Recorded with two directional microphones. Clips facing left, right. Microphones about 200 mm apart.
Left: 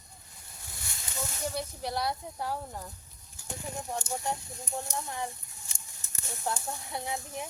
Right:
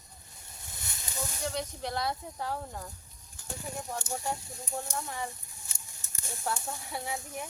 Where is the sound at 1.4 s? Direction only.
10° left (ahead or behind).